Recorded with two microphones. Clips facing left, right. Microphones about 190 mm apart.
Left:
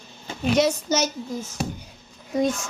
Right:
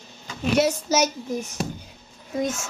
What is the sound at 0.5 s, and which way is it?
Speech, 5° right (ahead or behind).